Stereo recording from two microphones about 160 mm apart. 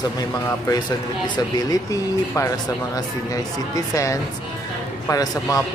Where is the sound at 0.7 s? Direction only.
25° left (ahead or behind).